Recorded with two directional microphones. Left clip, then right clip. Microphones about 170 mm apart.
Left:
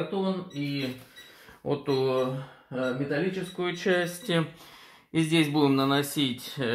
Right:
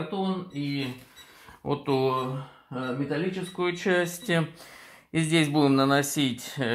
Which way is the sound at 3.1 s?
40° right (ahead or behind).